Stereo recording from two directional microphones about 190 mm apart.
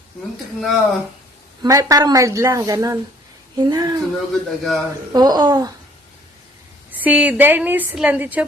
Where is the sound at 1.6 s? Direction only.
15° right (ahead or behind).